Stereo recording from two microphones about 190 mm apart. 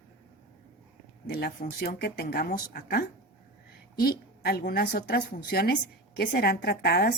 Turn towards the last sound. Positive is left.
turn(degrees=55)  # may be behind; listen again after turning